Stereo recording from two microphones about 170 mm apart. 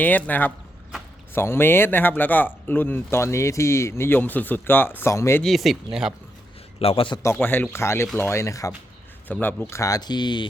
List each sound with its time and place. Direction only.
0.0 s speech: 10° left (ahead or behind)
5.4 s speech: centre (ahead or behind)
6.7 s a man's voice: 35° left (ahead or behind)
7.2 s speech: 15° left (ahead or behind)